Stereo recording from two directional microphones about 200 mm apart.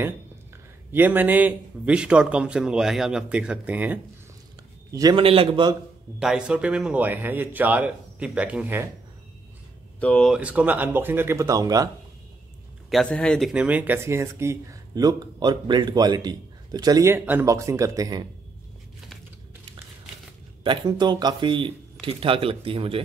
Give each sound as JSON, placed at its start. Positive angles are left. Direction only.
{"t": 0.9, "sound": "a man's voice", "side_deg": -10}
{"t": 4.9, "sound": "speech", "side_deg": -20}
{"t": 6.1, "sound": "speech", "side_deg": -5}
{"t": 9.9, "sound": "speech", "side_deg": 5}
{"t": 12.9, "sound": "speech", "side_deg": 5}
{"t": 20.6, "sound": "speech", "side_deg": -20}